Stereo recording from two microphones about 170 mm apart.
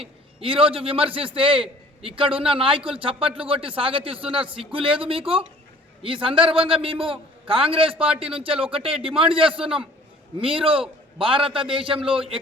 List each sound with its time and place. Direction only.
0.0 s a man's voice: 35° right (ahead or behind)